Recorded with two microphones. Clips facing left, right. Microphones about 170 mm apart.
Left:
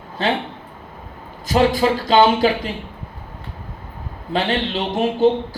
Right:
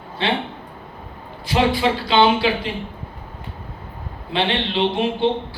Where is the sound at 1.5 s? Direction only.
45° left (ahead or behind).